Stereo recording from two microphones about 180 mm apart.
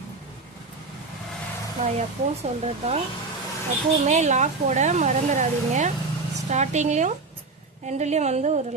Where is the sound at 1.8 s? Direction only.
40° right (ahead or behind).